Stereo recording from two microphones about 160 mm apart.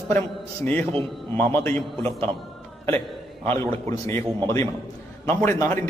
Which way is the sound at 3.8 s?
20° left (ahead or behind).